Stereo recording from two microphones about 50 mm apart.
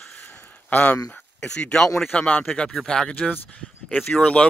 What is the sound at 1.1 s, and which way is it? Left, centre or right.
Speech, centre.